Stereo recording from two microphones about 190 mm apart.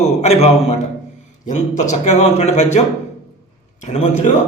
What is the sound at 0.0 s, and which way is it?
Speech, 35° left (ahead or behind).